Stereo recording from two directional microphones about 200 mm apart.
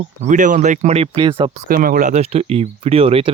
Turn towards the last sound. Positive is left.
turn(degrees=-30)  # may be behind; listen again after turning